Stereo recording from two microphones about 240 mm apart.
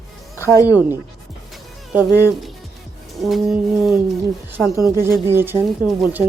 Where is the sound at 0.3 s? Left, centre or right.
Centre.